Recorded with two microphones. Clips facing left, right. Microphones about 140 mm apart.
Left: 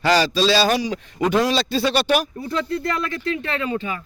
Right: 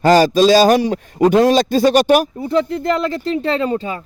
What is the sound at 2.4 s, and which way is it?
Speech, 15° right (ahead or behind).